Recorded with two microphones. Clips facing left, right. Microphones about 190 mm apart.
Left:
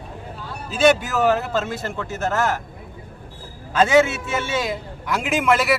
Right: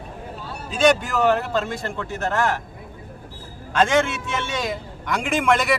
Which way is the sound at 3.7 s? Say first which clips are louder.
Left 3 dB; 5° left (ahead or behind).